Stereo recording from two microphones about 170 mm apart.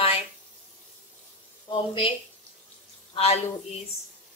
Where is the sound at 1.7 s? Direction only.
30° left (ahead or behind).